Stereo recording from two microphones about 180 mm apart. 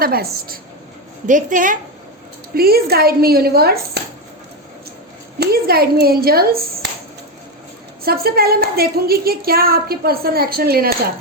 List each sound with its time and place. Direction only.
0.0 s a woman's voice: 55° right (ahead or behind)
2.6 s a woman's voice: 60° right (ahead or behind)
5.4 s a woman's voice: 60° right (ahead or behind)
8.0 s a woman's voice: 60° right (ahead or behind)